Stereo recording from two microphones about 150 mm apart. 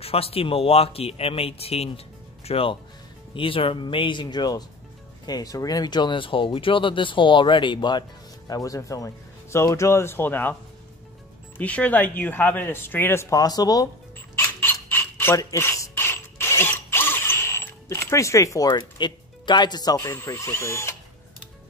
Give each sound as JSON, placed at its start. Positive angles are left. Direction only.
{"t": 0.0, "sound": "speech", "side_deg": 40}
{"t": 11.5, "sound": "speech", "side_deg": 10}
{"t": 14.6, "sound": "a sound", "side_deg": 15}